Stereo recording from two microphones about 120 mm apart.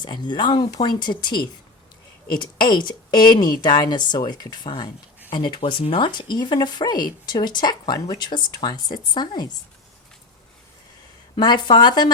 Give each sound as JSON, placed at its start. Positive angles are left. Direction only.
{"t": 0.0, "sound": "speech", "side_deg": 40}
{"t": 11.3, "sound": "speech", "side_deg": 40}